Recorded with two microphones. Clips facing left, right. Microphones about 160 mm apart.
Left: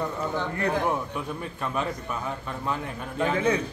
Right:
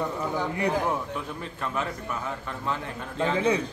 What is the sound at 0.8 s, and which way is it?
A man's voice, 15° left (ahead or behind).